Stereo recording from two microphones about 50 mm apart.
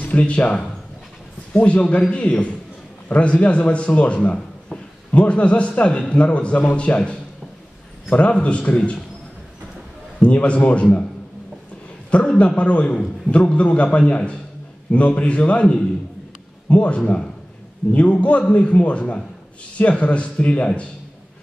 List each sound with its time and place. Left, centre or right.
0.0 s a man's voice: left
10.2 s a man's voice: left
12.4 s a man's voice: left